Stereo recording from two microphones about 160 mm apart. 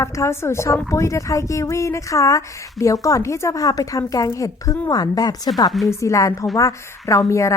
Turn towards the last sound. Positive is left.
turn(degrees=20)  # may be behind; listen again after turning